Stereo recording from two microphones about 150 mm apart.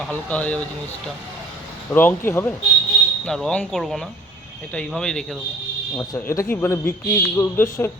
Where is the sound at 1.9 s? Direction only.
10° left (ahead or behind).